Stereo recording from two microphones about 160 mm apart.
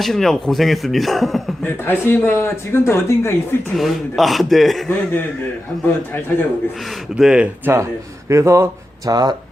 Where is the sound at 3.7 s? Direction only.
Centre (ahead or behind).